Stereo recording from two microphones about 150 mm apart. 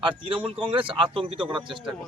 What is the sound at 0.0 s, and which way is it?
Speech, 35° right (ahead or behind).